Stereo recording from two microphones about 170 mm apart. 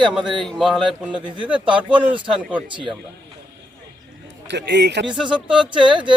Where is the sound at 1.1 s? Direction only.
30° right (ahead or behind).